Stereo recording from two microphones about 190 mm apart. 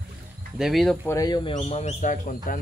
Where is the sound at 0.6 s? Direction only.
Centre (ahead or behind).